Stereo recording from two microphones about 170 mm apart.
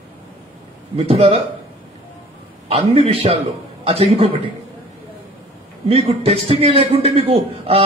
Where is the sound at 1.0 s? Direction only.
35° right (ahead or behind).